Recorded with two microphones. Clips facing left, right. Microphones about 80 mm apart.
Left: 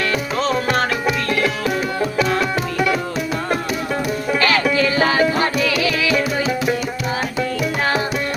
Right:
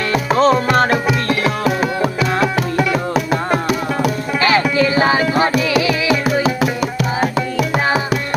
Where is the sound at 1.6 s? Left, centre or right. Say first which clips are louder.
Right 3 dB; right.